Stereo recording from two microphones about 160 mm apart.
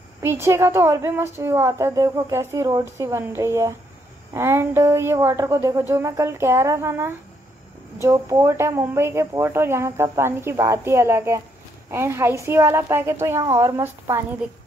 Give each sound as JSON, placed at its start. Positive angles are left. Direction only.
{"t": 0.2, "sound": "a woman's voice", "side_deg": -15}